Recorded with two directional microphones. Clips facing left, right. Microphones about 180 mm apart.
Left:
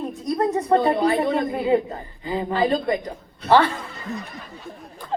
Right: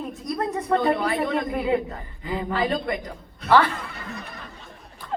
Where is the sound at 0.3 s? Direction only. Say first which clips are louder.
Left 4 dB; 30° left (ahead or behind).